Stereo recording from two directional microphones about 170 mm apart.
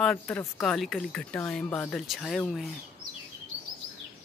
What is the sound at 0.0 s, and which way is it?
Speech, 5° left (ahead or behind).